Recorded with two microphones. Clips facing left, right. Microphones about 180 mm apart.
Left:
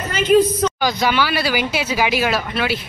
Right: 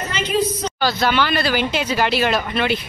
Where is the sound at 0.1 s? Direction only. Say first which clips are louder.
Left 8 dB; 50° left (ahead or behind).